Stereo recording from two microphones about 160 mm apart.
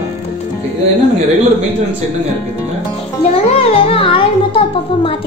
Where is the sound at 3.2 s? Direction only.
35° left (ahead or behind).